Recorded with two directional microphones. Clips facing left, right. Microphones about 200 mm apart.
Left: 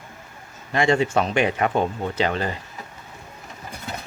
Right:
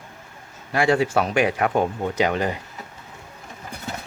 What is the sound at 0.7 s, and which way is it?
Speech, 5° right (ahead or behind).